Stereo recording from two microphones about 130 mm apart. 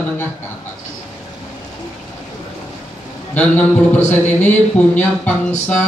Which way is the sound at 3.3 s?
10° left (ahead or behind).